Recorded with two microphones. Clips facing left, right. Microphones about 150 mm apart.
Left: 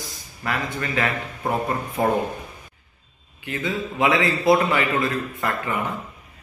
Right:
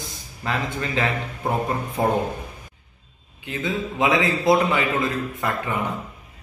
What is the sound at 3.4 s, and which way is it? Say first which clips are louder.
A man's voice: even; 15° right (ahead or behind).